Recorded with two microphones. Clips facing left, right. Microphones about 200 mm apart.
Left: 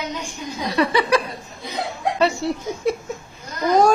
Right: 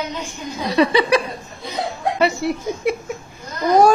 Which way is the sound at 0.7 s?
20° right (ahead or behind).